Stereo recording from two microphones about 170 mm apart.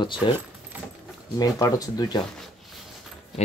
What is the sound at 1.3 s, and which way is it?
Speech, 20° left (ahead or behind).